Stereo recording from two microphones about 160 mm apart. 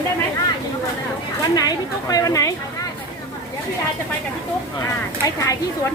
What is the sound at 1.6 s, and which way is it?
Speech, 25° left (ahead or behind).